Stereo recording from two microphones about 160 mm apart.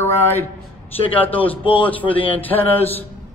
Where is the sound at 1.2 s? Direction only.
10° left (ahead or behind).